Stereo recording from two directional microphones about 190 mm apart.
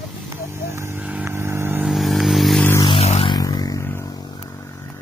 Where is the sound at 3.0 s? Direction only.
30° left (ahead or behind).